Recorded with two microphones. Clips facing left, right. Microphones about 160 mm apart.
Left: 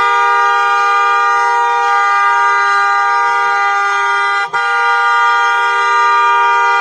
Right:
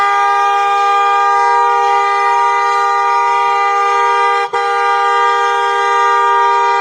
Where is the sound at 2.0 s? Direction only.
20° right (ahead or behind).